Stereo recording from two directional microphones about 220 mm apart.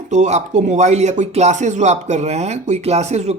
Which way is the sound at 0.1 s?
30° right (ahead or behind).